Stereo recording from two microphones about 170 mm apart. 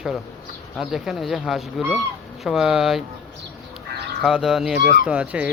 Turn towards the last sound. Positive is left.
turn(degrees=-5)  # may be behind; listen again after turning